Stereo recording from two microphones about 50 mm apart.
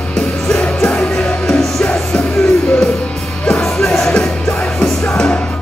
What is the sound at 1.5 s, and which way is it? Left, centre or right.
Music, centre.